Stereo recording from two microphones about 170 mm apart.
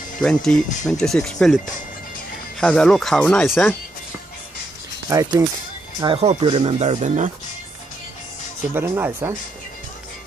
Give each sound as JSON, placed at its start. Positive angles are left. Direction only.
{"t": 0.2, "sound": "speech", "side_deg": 5}
{"t": 2.6, "sound": "speech", "side_deg": 5}
{"t": 5.1, "sound": "speech", "side_deg": -20}
{"t": 6.0, "sound": "speech", "side_deg": -30}
{"t": 8.7, "sound": "speech", "side_deg": -15}